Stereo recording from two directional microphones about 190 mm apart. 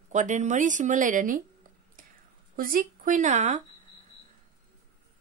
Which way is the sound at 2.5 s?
50° right (ahead or behind).